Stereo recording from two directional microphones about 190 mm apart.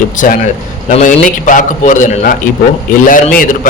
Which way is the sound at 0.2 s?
40° left (ahead or behind).